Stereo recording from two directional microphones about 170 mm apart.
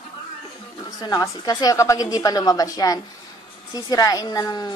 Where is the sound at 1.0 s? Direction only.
20° left (ahead or behind).